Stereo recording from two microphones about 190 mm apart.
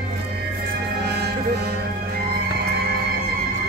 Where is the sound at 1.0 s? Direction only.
60° right (ahead or behind).